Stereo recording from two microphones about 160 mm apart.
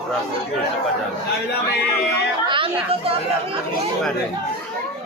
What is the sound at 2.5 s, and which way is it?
Speech, 35° right (ahead or behind).